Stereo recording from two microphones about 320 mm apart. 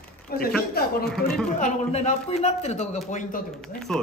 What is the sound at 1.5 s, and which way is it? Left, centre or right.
Speech, left.